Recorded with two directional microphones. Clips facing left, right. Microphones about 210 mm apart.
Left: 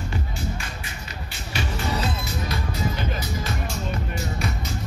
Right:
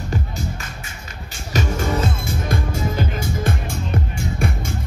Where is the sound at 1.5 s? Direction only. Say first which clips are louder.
Right 6 dB; 45° right (ahead or behind).